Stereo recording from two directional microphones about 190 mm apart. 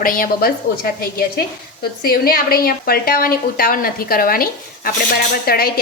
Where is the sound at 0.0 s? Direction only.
50° left (ahead or behind).